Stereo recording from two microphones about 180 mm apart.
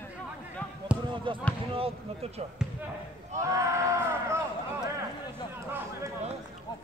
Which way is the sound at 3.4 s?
15° right (ahead or behind).